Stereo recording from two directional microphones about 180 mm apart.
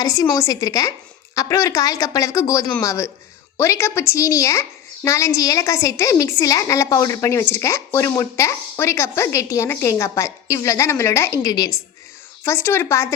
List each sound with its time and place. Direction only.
0.0 s a woman's voice: 20° left (ahead or behind)